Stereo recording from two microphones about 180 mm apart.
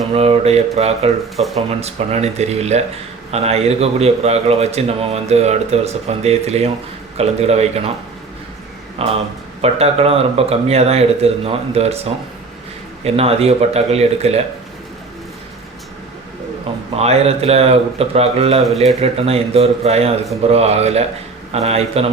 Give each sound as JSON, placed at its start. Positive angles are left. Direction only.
{"t": 0.1, "sound": "a man's voice", "side_deg": -35}
{"t": 9.0, "sound": "a man's voice", "side_deg": -35}
{"t": 16.9, "sound": "a man's voice", "side_deg": -35}